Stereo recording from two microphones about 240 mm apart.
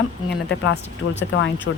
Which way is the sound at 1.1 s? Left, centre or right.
Left.